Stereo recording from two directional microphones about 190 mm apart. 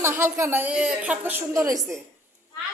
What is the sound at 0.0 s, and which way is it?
A woman's voice, 15° right (ahead or behind).